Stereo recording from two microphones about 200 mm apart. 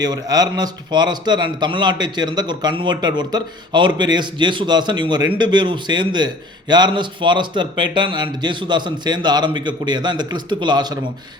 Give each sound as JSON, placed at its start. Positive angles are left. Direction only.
{"t": 0.0, "sound": "a man's voice", "side_deg": -20}